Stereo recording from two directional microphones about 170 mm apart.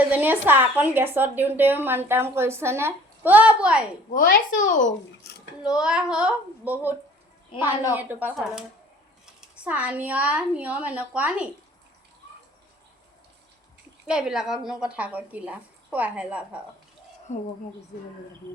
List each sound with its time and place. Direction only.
0.1 s a woman's voice: 10° right (ahead or behind)
4.1 s speech: 55° left (ahead or behind)
5.2 s a sound: 75° left (ahead or behind)
5.6 s a child's voice: 5° right (ahead or behind)
7.9 s a woman's voice: 10° right (ahead or behind)
14.1 s a woman's voice: 5° right (ahead or behind)